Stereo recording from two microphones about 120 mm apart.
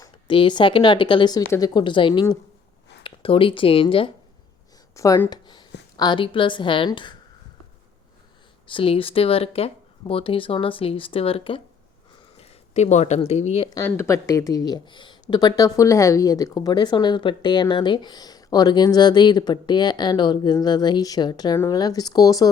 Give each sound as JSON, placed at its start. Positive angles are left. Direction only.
{"t": 0.3, "sound": "speech", "side_deg": 45}
{"t": 4.9, "sound": "speech", "side_deg": 30}
{"t": 8.6, "sound": "speech", "side_deg": 50}
{"t": 12.4, "sound": "speech", "side_deg": 70}
{"t": 13.8, "sound": "speech", "side_deg": 20}